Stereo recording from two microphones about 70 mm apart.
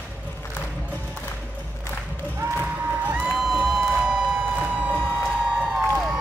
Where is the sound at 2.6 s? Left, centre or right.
Centre.